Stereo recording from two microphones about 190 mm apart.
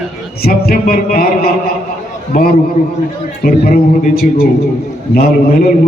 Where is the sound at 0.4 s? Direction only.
50° left (ahead or behind).